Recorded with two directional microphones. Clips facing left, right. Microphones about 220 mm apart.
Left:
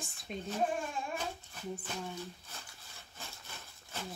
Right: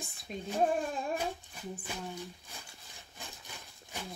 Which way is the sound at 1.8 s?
10° right (ahead or behind).